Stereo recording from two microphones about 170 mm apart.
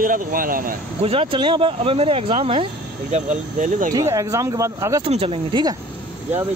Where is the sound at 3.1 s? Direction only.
50° right (ahead or behind).